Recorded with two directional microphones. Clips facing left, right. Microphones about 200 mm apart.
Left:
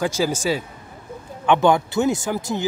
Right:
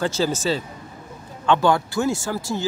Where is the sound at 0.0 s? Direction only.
10° left (ahead or behind).